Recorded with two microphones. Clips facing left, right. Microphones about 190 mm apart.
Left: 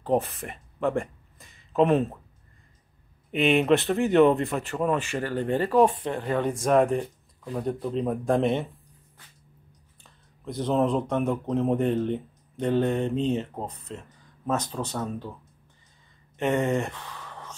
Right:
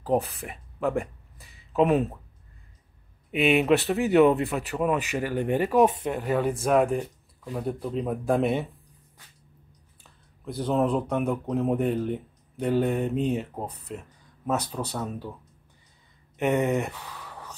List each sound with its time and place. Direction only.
0.0 s speech: centre (ahead or behind)
3.3 s speech: 5° right (ahead or behind)
10.4 s speech: centre (ahead or behind)
16.3 s speech: 15° right (ahead or behind)
16.7 s a sound: 5° right (ahead or behind)